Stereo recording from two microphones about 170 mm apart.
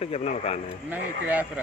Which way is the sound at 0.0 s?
35° left (ahead or behind).